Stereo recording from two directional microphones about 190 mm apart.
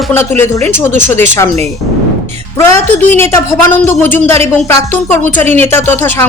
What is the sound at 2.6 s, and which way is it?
Speech, 15° left (ahead or behind).